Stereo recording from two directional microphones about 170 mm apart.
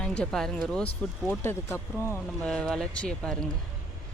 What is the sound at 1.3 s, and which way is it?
Speech, 15° left (ahead or behind).